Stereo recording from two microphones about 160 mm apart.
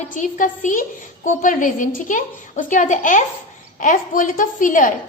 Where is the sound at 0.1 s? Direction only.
55° left (ahead or behind).